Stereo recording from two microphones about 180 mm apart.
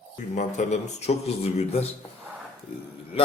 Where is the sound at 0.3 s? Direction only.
40° left (ahead or behind).